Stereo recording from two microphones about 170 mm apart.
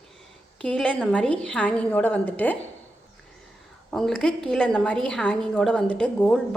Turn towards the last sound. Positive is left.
turn(degrees=5)  # may be behind; listen again after turning